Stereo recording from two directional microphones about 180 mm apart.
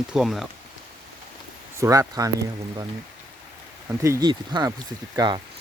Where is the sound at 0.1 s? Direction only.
Centre (ahead or behind).